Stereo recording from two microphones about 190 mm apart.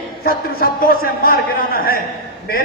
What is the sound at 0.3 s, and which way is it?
A man's voice, 50° left (ahead or behind).